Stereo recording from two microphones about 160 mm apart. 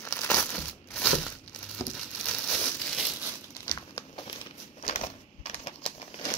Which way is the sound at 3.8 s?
30° left (ahead or behind).